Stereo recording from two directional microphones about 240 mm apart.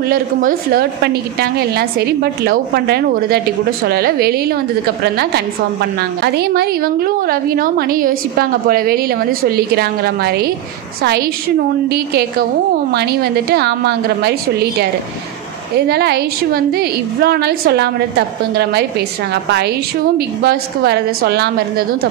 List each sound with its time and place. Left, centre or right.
0.1 s a woman's voice: right
15.9 s a woman's voice: right
20.2 s a woman's voice: right